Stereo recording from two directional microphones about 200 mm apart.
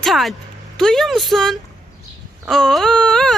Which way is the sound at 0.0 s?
Centre (ahead or behind).